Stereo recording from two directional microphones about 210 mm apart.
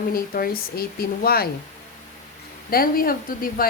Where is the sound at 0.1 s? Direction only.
45° left (ahead or behind).